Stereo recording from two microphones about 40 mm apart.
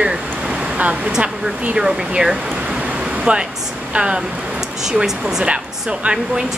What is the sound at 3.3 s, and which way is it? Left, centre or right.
Speech, right.